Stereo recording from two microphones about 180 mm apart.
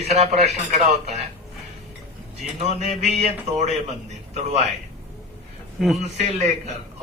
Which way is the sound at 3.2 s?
35° right (ahead or behind).